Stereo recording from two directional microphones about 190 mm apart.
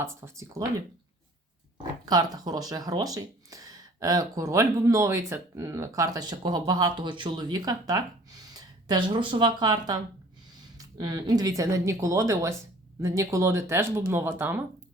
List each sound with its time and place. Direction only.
0.0 s speech: 15° right (ahead or behind)
1.8 s speech: 20° right (ahead or behind)